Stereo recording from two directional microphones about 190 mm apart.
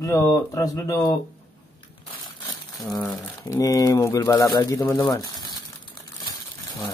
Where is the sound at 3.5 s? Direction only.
20° left (ahead or behind).